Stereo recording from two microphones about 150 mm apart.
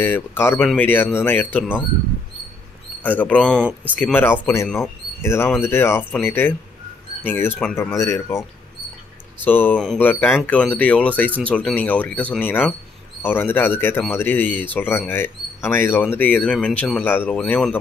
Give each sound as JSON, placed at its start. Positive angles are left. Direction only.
{"t": 0.0, "sound": "speech", "side_deg": 15}
{"t": 3.0, "sound": "speech", "side_deg": 10}
{"t": 9.4, "sound": "speech", "side_deg": 10}
{"t": 17.4, "sound": "speech", "side_deg": 5}